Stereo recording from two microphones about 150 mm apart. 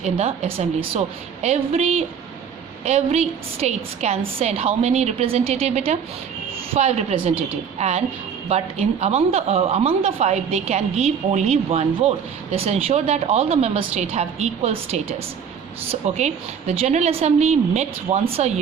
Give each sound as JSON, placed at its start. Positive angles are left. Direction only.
{"t": 0.0, "sound": "speech", "side_deg": -45}